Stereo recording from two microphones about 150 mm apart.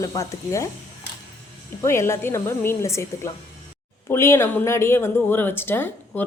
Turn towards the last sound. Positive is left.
turn(degrees=15)  # may be behind; listen again after turning